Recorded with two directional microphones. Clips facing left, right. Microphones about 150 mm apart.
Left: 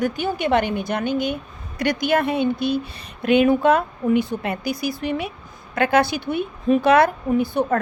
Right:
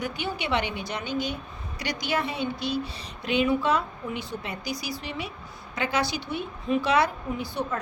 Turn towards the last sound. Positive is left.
turn(degrees=55)  # may be behind; listen again after turning